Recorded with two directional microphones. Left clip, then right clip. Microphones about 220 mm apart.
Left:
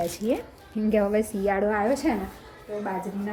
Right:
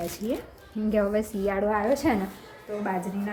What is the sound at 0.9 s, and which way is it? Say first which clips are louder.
Speech: left 2 dB; 15° left (ahead or behind).